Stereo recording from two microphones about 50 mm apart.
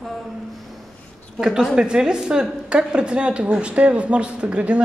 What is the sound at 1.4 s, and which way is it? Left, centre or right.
A woman's voice, centre.